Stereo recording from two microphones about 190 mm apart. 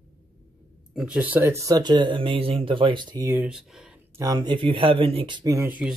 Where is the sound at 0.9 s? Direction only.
5° right (ahead or behind).